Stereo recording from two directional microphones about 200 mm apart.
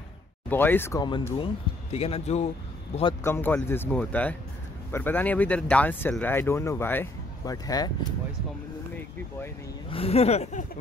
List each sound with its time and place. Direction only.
0.5 s speech: 10° left (ahead or behind); by 3.1 s 35° left (ahead or behind)
3.3 s speech: 10° left (ahead or behind)
9.8 s speech: 30° left (ahead or behind)